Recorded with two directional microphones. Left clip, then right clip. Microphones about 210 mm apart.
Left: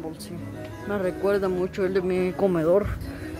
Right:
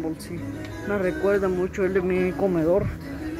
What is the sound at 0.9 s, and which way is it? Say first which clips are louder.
A woman's voice: right 2 dB; 15° left (ahead or behind).